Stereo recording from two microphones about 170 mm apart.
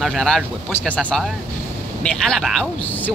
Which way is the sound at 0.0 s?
Centre (ahead or behind).